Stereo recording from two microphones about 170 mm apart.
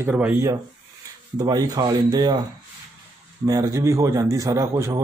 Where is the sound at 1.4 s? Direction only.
20° right (ahead or behind).